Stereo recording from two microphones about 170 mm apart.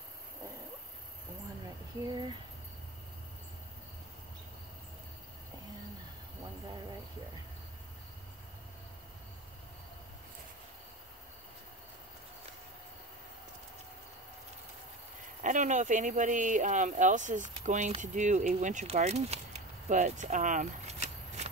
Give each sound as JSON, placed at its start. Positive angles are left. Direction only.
{"t": 15.4, "sound": "speech", "side_deg": -45}